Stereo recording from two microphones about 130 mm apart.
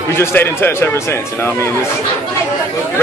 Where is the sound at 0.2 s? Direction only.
20° left (ahead or behind).